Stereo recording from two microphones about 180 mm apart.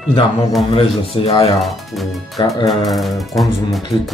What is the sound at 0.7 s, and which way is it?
Speech, 30° left (ahead or behind).